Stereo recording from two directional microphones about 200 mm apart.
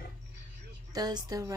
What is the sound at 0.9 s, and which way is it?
Speech, 20° right (ahead or behind).